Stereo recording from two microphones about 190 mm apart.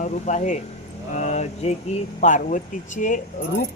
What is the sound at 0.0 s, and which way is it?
Speech, 40° left (ahead or behind).